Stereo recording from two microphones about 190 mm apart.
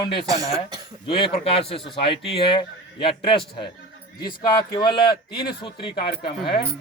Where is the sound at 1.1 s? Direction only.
30° left (ahead or behind).